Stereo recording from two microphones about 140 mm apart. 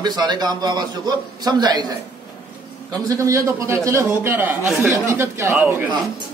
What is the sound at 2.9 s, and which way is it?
A man's voice, 25° right (ahead or behind).